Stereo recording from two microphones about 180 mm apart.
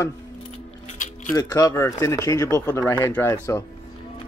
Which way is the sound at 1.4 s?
20° left (ahead or behind).